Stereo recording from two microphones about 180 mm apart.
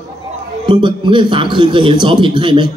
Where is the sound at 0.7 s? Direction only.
25° right (ahead or behind).